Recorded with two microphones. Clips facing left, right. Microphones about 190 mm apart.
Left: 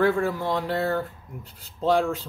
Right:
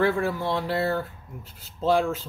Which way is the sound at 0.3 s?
15° left (ahead or behind).